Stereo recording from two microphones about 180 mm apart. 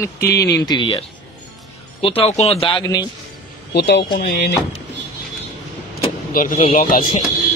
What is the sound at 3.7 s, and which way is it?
Speech, 65° left (ahead or behind).